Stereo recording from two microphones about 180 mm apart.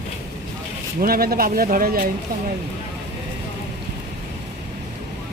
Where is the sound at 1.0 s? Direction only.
55° right (ahead or behind).